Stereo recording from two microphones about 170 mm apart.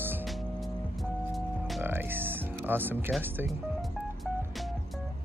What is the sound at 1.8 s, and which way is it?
Music, 10° right (ahead or behind).